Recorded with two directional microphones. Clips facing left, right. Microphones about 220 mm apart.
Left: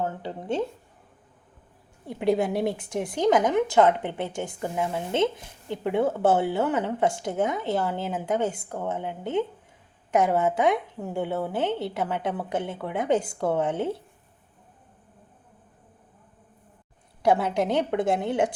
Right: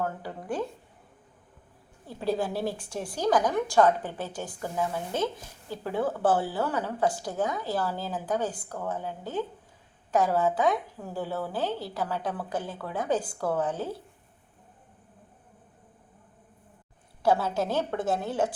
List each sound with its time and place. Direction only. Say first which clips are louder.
0.0 s a woman's voice: left 2 dB; 20° left (ahead or behind)
2.0 s a woman's voice: left 5 dB; 20° left (ahead or behind)
17.2 s a woman's voice: left 3 dB; 20° left (ahead or behind)